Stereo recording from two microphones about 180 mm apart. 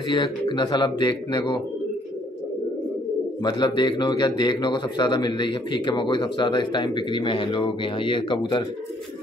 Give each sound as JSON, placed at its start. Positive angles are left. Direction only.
{"t": 0.1, "sound": "speech", "side_deg": 25}
{"t": 3.4, "sound": "speech", "side_deg": 25}